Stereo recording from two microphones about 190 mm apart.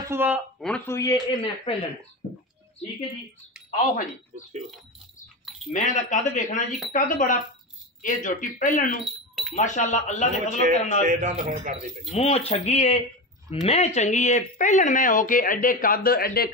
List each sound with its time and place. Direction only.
0.0 s a sound: 10° right (ahead or behind)
0.6 s speech: 5° left (ahead or behind); by 1.7 s 25° left (ahead or behind)
3.7 s speech: 40° left (ahead or behind)
5.4 s keys jangling: centre (ahead or behind)
5.7 s speech: 40° left (ahead or behind)
9.3 s a sound: centre (ahead or behind)
9.6 s speech: 40° left (ahead or behind)
11.0 s a man's voice: 45° right (ahead or behind)
12.1 s speech: 35° left (ahead or behind); by 16.4 s 50° left (ahead or behind)